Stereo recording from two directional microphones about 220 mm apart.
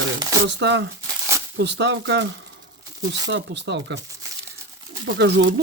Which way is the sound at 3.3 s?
50° right (ahead or behind).